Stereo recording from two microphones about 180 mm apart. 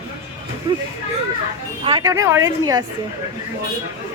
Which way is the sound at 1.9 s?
20° right (ahead or behind).